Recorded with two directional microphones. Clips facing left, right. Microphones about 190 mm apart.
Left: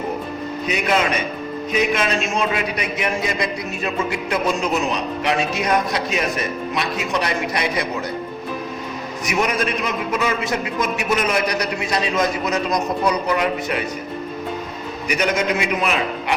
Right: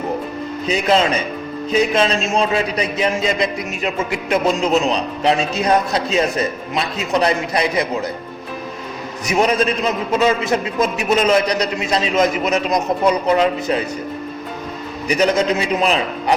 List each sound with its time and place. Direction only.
0.7 s a man's voice: 30° right (ahead or behind)
9.3 s a man's voice: 30° right (ahead or behind)
15.0 s a man's voice: 30° right (ahead or behind)